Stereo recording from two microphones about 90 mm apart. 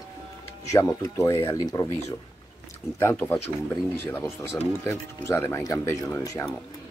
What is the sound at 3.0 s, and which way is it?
Speech, 25° left (ahead or behind).